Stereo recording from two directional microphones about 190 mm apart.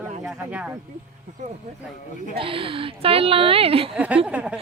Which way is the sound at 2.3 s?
30° right (ahead or behind).